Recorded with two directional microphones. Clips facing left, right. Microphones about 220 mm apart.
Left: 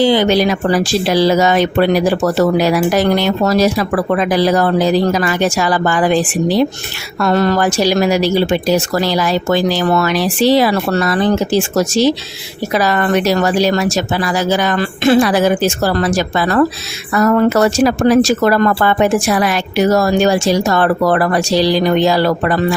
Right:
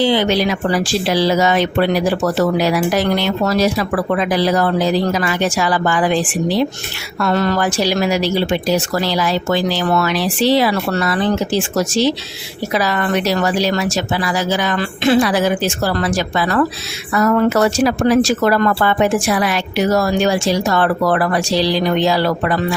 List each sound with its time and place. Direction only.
0.0 s speech: 45° left (ahead or behind)